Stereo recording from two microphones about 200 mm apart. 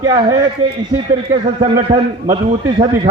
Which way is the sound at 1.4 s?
30° right (ahead or behind).